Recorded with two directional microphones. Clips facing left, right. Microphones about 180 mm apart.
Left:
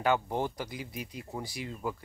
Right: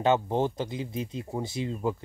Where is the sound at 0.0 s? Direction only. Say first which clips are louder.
Right 5 dB; 20° right (ahead or behind).